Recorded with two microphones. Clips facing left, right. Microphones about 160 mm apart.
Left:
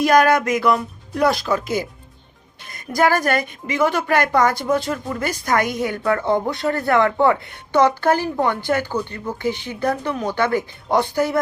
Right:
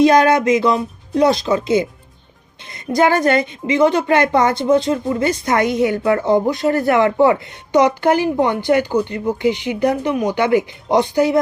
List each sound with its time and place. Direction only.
0.0 s speech: 20° right (ahead or behind)